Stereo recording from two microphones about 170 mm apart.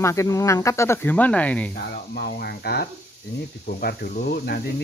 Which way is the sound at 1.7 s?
70° left (ahead or behind).